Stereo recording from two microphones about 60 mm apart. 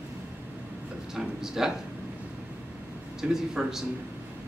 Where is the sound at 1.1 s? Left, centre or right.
Centre.